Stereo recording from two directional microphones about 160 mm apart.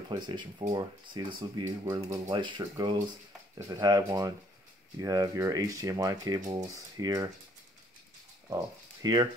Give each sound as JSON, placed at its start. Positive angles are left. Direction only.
{"t": 0.1, "sound": "speech", "side_deg": -30}
{"t": 9.0, "sound": "speech", "side_deg": -25}